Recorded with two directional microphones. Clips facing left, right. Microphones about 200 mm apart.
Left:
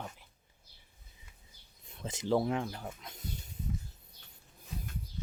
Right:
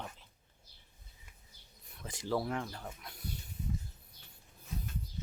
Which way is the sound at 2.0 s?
20° left (ahead or behind).